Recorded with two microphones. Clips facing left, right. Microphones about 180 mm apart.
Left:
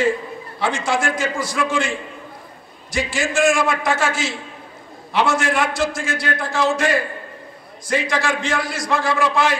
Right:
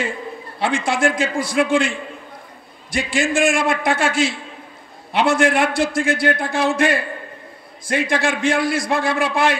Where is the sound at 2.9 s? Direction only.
60° right (ahead or behind).